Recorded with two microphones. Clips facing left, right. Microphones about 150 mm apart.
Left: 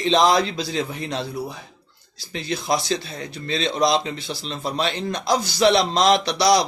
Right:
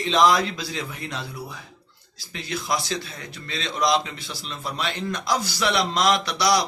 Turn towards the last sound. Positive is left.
turn(degrees=30)  # may be behind; listen again after turning